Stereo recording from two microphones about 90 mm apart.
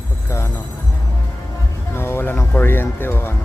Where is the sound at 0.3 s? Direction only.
30° left (ahead or behind).